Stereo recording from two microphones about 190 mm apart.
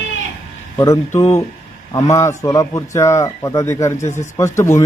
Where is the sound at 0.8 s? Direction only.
15° left (ahead or behind).